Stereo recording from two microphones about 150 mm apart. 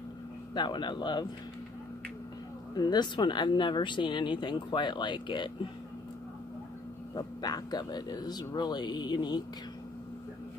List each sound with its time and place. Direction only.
0.6 s speech: 30° left (ahead or behind)
2.7 s speech: 25° left (ahead or behind)
7.2 s speech: 25° left (ahead or behind)